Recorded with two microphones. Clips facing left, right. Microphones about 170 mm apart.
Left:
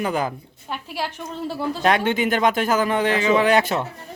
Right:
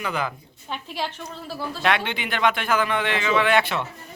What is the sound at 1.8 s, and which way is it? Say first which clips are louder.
A man's voice: left 5 dB; 40° left (ahead or behind).